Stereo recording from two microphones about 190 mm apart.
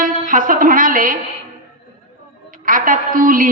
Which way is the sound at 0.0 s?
45° right (ahead or behind).